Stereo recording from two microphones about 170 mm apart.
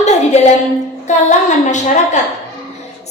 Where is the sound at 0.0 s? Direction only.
40° left (ahead or behind).